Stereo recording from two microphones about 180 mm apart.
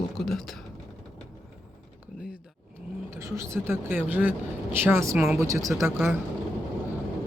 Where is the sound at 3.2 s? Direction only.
15° right (ahead or behind).